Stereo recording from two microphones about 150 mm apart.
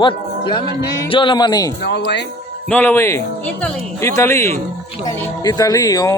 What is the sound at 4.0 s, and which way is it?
Speech, 20° left (ahead or behind).